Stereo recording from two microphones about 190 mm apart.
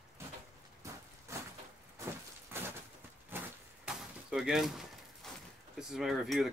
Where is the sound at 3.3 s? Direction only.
10° right (ahead or behind).